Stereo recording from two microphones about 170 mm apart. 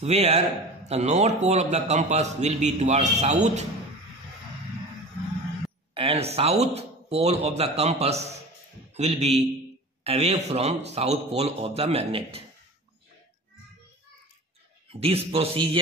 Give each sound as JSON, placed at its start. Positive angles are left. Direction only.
{"t": 0.0, "sound": "a man's voice", "side_deg": -40}
{"t": 5.9, "sound": "a man's voice", "side_deg": -35}
{"t": 14.9, "sound": "a man's voice", "side_deg": -35}